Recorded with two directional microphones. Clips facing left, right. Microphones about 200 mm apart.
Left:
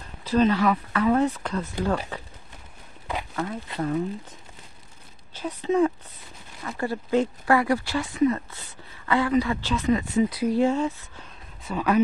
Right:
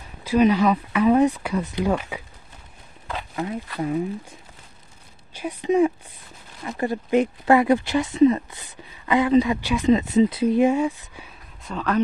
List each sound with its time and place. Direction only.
0.2 s speech: 10° right (ahead or behind)
3.8 s speech: 10° right (ahead or behind)
11.6 s speech: 10° left (ahead or behind)